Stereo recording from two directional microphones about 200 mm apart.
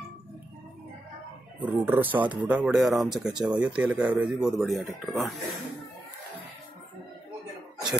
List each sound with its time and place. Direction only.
1.6 s speech: 10° right (ahead or behind)